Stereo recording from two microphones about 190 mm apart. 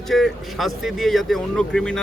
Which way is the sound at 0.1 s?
Centre (ahead or behind).